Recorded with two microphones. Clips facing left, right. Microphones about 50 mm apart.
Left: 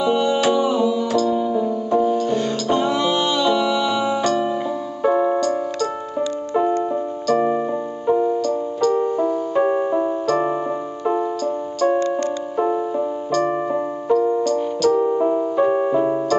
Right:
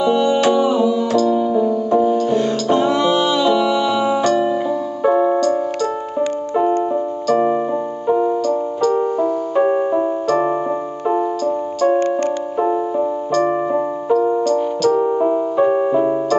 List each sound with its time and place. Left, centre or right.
0.0 s music: centre
7.2 s keyboard: centre
8.1 s music: centre
8.5 s keyboard: centre
11.1 s music: centre
12.5 s keyboard: centre